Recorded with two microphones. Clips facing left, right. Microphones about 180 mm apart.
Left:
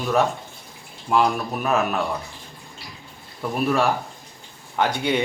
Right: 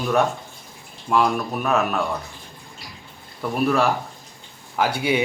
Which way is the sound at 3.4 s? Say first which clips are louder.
Right 1 dB; centre (ahead or behind).